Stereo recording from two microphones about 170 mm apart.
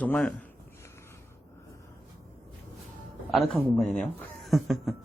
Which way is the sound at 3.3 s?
Centre (ahead or behind).